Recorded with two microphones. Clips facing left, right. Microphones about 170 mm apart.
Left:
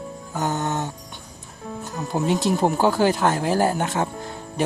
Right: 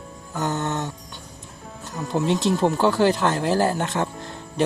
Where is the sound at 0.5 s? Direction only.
35° left (ahead or behind).